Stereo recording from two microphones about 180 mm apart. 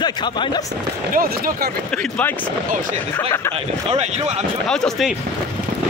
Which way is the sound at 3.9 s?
35° right (ahead or behind).